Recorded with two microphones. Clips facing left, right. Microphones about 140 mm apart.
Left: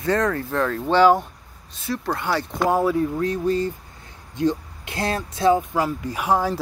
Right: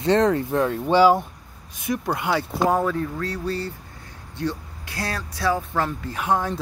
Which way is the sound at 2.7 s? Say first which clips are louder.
Left 3 dB; 10° left (ahead or behind).